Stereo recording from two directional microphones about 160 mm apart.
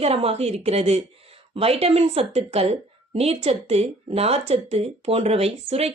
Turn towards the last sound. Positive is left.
turn(degrees=-40)  # may be behind; listen again after turning